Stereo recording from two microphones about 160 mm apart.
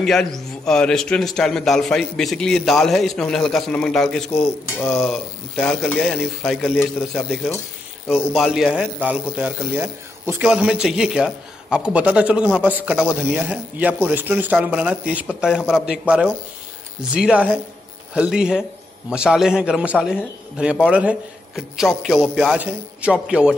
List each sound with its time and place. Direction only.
0.0 s a man's voice: centre (ahead or behind)